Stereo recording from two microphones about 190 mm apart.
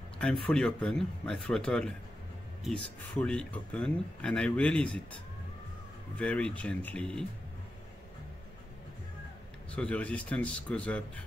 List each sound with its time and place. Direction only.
0.2 s speech: 5° left (ahead or behind)
6.1 s speech: 5° left (ahead or behind)
9.8 s speech: 5° left (ahead or behind)